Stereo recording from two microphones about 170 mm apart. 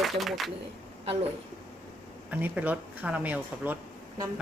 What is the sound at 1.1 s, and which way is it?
Speech, 35° right (ahead or behind).